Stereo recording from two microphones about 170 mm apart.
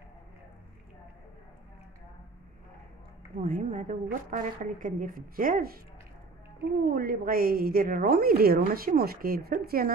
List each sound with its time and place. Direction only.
3.3 s a woman's voice: 50° right (ahead or behind)
6.8 s a woman's voice: 60° right (ahead or behind)